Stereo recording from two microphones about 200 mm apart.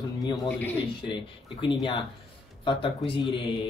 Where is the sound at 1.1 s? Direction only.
25° left (ahead or behind).